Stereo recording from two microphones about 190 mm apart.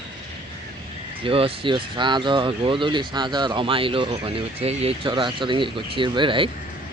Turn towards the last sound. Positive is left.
turn(degrees=-25)  # may be behind; listen again after turning